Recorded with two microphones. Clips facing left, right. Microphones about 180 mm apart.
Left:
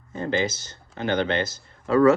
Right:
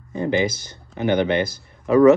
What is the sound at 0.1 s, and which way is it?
Speech, 15° right (ahead or behind).